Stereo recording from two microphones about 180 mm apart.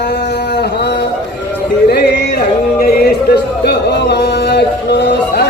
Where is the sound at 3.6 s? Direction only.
65° left (ahead or behind).